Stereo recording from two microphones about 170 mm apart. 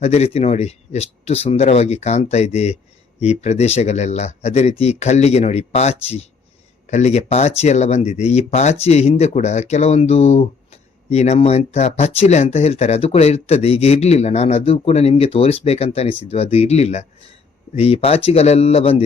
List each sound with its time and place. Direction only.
0.0 s speech: 40° left (ahead or behind)